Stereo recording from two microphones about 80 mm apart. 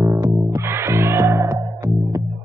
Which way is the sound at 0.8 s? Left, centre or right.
Right.